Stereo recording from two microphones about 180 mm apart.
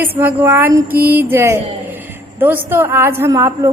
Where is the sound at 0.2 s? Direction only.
10° right (ahead or behind).